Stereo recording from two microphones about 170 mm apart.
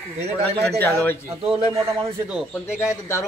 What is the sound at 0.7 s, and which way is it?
Speech, 10° left (ahead or behind).